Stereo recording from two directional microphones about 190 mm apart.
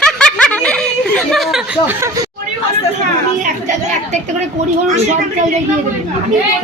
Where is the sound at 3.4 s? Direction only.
40° right (ahead or behind).